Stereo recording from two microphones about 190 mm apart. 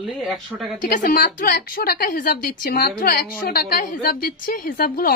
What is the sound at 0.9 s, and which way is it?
A woman's voice, 50° left (ahead or behind).